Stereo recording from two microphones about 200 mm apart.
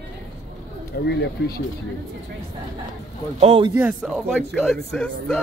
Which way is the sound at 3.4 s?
30° right (ahead or behind).